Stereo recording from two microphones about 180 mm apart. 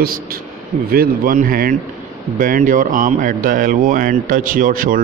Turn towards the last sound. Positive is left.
turn(degrees=-50)  # may be behind; listen again after turning